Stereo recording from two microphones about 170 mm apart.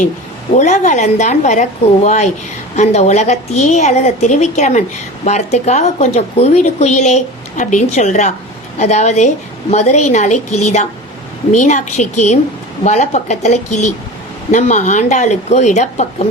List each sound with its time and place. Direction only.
0.5 s a woman's voice: 45° left (ahead or behind)